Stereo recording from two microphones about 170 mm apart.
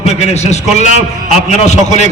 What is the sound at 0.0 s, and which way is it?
A man's voice, 40° left (ahead or behind).